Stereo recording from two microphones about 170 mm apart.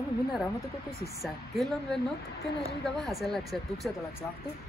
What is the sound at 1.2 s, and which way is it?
Speech, centre (ahead or behind).